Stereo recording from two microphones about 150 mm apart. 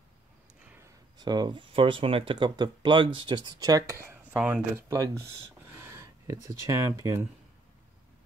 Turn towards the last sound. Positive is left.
turn(degrees=-20)  # may be behind; listen again after turning